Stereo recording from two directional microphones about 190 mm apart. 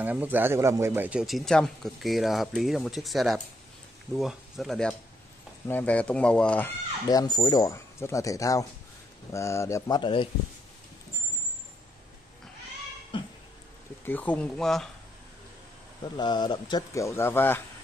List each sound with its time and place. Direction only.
0.0 s speech: 10° right (ahead or behind)
7.1 s speech: 20° left (ahead or behind)
13.1 s cat: 25° left (ahead or behind)
14.0 s speech: 10° left (ahead or behind)
16.0 s speech: 25° left (ahead or behind)